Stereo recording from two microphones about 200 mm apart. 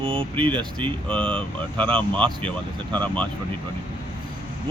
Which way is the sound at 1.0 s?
5° left (ahead or behind).